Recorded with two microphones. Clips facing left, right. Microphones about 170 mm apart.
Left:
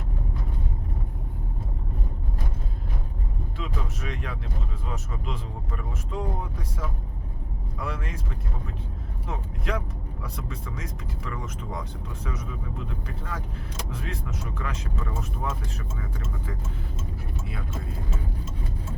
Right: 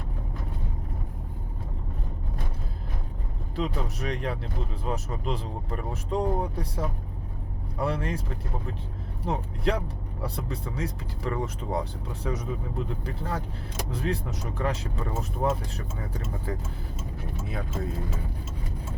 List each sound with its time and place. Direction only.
3.5 s speech: 35° right (ahead or behind)
9.2 s speech: 30° right (ahead or behind)